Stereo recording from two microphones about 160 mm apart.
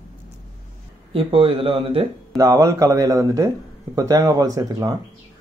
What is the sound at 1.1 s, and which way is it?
Speech, 35° right (ahead or behind).